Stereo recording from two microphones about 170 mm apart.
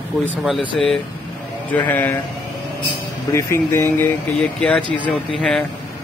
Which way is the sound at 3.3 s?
15° left (ahead or behind).